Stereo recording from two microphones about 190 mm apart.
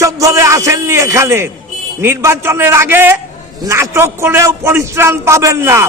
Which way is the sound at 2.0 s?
10° right (ahead or behind).